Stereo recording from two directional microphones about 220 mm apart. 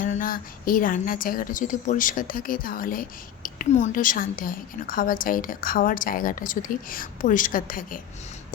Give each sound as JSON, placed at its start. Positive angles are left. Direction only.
{"t": 0.0, "sound": "a woman's voice", "side_deg": 35}